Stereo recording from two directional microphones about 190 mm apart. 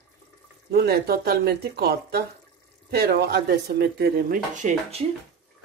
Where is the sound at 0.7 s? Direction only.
55° right (ahead or behind).